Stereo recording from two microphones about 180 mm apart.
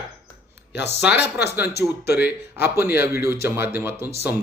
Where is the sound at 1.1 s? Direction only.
70° left (ahead or behind).